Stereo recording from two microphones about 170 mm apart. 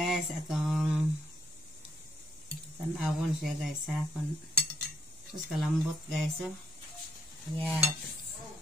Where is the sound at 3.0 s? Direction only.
Centre (ahead or behind).